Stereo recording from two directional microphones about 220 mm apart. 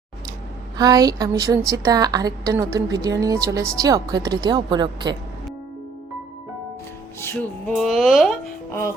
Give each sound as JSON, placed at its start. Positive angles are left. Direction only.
{"t": 0.8, "sound": "a woman's voice", "side_deg": -15}
{"t": 7.2, "sound": "music", "side_deg": 10}
{"t": 7.8, "sound": "speech", "side_deg": 0}